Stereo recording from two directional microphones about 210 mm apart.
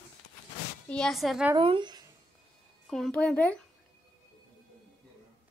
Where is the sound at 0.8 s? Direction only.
5° left (ahead or behind).